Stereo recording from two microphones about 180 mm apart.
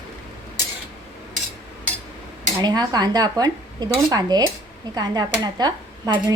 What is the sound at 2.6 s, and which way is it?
Speech, 20° right (ahead or behind).